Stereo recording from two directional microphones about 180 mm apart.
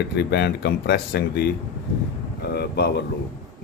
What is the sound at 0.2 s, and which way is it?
Speech, 70° left (ahead or behind).